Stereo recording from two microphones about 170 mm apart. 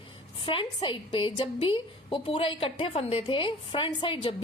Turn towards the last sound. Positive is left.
turn(degrees=30)  # may be behind; listen again after turning